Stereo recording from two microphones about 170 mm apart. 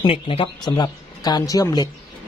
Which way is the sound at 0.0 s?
30° left (ahead or behind).